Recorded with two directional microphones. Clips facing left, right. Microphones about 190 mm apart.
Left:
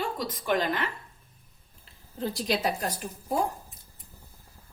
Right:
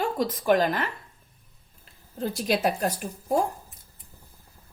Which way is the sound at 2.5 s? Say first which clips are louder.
Right 4 dB; 50° right (ahead or behind).